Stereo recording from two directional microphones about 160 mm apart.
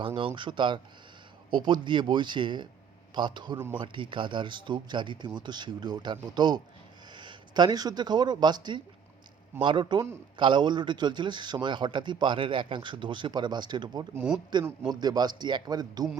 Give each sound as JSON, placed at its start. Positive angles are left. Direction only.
{"t": 0.0, "sound": "a man's voice", "side_deg": -35}